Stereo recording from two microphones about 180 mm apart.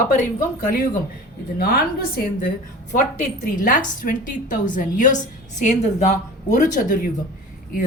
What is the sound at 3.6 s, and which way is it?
Speech, 50° left (ahead or behind).